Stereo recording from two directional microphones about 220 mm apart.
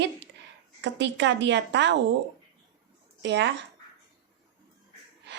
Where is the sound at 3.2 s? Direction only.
55° right (ahead or behind).